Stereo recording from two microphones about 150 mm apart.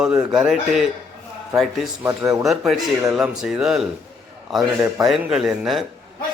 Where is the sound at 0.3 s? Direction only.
5° right (ahead or behind).